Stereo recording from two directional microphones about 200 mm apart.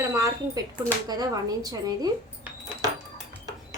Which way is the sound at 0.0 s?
15° right (ahead or behind).